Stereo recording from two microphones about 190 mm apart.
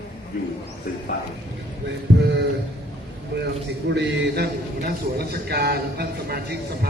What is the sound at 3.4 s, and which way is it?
A man's voice, 65° right (ahead or behind).